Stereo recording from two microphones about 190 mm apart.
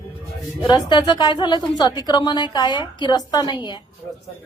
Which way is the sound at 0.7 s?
20° left (ahead or behind).